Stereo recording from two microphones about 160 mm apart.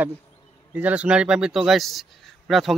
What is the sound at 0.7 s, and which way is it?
A man's voice, 10° right (ahead or behind).